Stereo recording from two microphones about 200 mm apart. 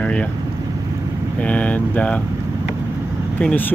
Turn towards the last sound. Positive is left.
turn(degrees=5)  # may be behind; listen again after turning